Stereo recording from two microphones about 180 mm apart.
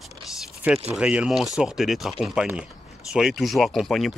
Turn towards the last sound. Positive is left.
turn(degrees=0)  # may be behind; listen again after turning